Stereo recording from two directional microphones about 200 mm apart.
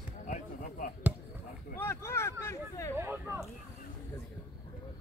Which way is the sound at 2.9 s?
10° right (ahead or behind).